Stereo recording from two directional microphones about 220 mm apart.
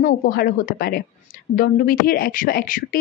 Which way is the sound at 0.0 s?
40° left (ahead or behind).